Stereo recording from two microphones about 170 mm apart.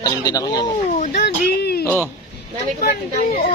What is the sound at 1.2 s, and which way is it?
Speech, 70° left (ahead or behind).